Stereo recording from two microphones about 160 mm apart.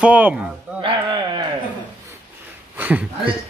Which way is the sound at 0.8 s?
30° right (ahead or behind).